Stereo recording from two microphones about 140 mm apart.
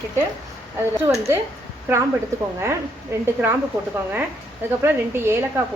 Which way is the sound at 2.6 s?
15° right (ahead or behind).